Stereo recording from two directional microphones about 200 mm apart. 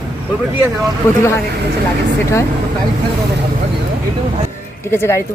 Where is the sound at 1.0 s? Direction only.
15° left (ahead or behind).